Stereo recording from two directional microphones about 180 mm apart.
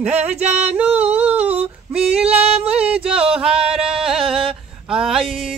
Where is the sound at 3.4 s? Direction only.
30° right (ahead or behind).